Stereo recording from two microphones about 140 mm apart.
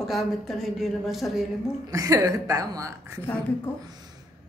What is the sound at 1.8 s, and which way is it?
A woman's voice, 25° right (ahead or behind).